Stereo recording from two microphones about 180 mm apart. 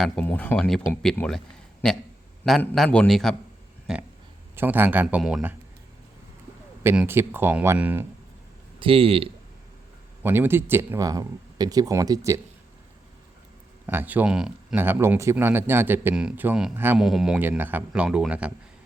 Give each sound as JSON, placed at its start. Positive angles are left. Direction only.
{"t": 0.0, "sound": "speech", "side_deg": 10}
{"t": 2.4, "sound": "speech", "side_deg": 5}
{"t": 4.5, "sound": "speech", "side_deg": -10}
{"t": 6.8, "sound": "speech", "side_deg": -10}
{"t": 8.8, "sound": "speech", "side_deg": -30}
{"t": 10.2, "sound": "speech", "side_deg": -15}
{"t": 13.8, "sound": "speech", "side_deg": -10}